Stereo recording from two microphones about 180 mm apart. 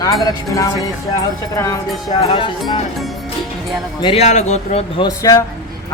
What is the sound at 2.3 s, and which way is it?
Speech, 30° left (ahead or behind).